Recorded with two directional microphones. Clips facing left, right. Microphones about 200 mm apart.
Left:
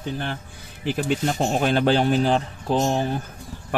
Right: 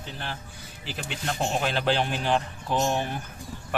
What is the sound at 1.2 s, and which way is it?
Speech, 35° left (ahead or behind).